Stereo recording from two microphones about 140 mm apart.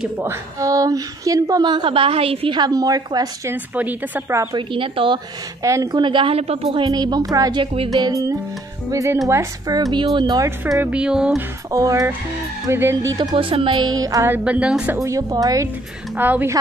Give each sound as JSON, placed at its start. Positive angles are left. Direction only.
{"t": 0.2, "sound": "a woman's voice", "side_deg": -20}
{"t": 3.5, "sound": "speech", "side_deg": -10}
{"t": 4.6, "sound": "a woman's voice", "side_deg": -35}
{"t": 5.6, "sound": "a woman's voice", "side_deg": -20}
{"t": 6.9, "sound": "a woman's voice", "side_deg": -30}
{"t": 7.6, "sound": "a woman's voice", "side_deg": -40}
{"t": 7.9, "sound": "a woman's voice", "side_deg": -25}
{"t": 10.8, "sound": "speech", "side_deg": -5}
{"t": 11.7, "sound": "a woman's voice", "side_deg": -25}
{"t": 13.3, "sound": "a woman's voice", "side_deg": -40}
{"t": 14.3, "sound": "speech", "side_deg": -10}
{"t": 15.0, "sound": "a woman's voice", "side_deg": -25}
{"t": 16.2, "sound": "speech", "side_deg": -15}